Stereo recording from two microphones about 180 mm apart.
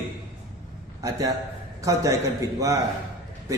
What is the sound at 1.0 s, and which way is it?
Speech, 20° right (ahead or behind).